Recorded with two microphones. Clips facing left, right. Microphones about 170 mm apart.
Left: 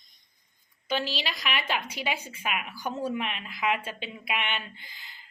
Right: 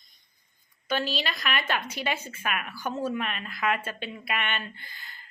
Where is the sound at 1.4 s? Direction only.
10° left (ahead or behind).